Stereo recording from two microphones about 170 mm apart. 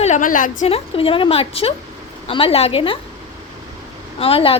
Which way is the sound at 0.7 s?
35° left (ahead or behind).